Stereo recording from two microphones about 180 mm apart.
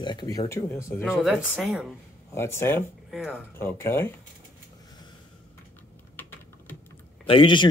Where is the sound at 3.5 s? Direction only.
15° left (ahead or behind).